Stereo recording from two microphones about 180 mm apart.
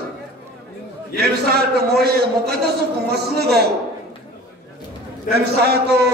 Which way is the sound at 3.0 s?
65° right (ahead or behind).